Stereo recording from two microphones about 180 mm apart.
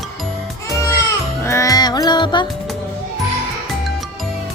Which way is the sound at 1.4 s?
15° left (ahead or behind).